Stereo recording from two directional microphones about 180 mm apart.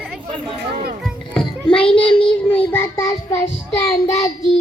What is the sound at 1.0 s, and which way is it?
Child singing, 5° left (ahead or behind).